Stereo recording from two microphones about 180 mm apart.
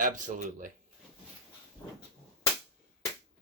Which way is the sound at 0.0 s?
45° right (ahead or behind).